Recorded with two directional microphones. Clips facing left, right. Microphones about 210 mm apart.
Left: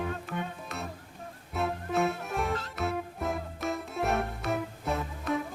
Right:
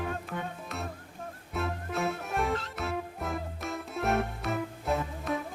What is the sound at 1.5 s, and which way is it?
Music, centre (ahead or behind).